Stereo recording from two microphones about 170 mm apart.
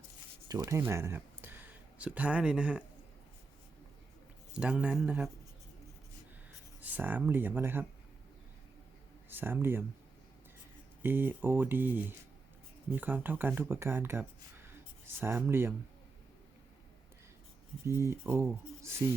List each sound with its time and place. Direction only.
0.4 s speech: 20° right (ahead or behind)
4.5 s speech: 5° right (ahead or behind)
6.8 s speech: 10° right (ahead or behind)
9.3 s speech: 10° right (ahead or behind)
11.0 s speech: 10° right (ahead or behind)
17.8 s speech: 15° right (ahead or behind)